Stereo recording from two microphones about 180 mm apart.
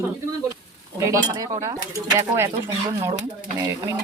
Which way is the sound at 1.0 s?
20° right (ahead or behind).